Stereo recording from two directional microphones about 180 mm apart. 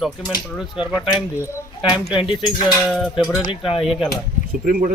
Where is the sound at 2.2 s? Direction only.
25° left (ahead or behind).